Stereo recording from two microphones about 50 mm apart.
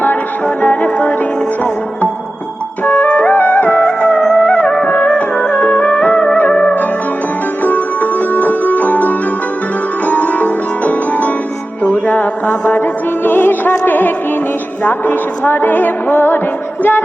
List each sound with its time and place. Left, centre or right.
0.0 s music: left
2.8 s music: left
4.7 s music: centre
7.6 s music: left